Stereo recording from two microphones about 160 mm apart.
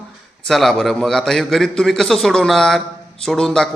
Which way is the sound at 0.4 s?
Centre (ahead or behind).